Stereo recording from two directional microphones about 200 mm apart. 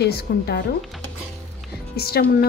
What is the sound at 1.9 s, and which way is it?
Speech, 50° left (ahead or behind).